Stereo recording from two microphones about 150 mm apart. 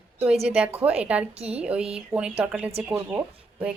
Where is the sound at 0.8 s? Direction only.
10° right (ahead or behind).